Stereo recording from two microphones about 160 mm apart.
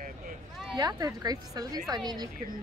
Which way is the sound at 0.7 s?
25° right (ahead or behind).